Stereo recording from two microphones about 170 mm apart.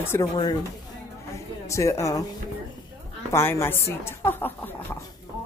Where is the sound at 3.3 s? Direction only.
15° left (ahead or behind).